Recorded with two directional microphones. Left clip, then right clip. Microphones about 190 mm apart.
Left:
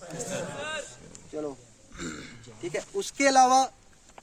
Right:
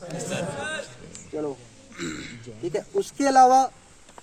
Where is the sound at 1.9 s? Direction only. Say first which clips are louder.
Right 5 dB; 55° left (ahead or behind).